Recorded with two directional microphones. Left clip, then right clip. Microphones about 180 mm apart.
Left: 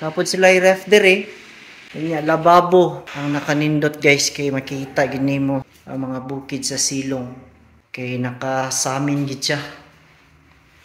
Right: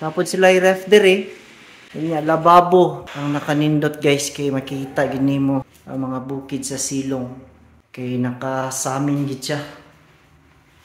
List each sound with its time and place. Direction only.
0.0 s speech: 20° right (ahead or behind)